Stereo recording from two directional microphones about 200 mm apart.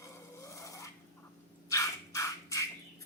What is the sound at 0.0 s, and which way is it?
Filing, 15° left (ahead or behind).